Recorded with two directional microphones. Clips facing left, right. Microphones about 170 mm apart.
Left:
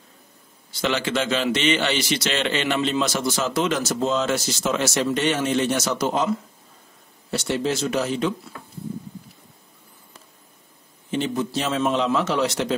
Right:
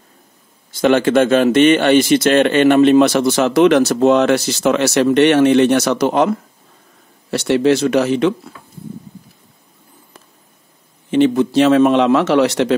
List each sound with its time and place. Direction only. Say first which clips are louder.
0.7 s a man's voice: right 11 dB; 50° right (ahead or behind); by 8.5 s 70° right (ahead or behind)
11.1 s a man's voice: right 11 dB; 70° right (ahead or behind)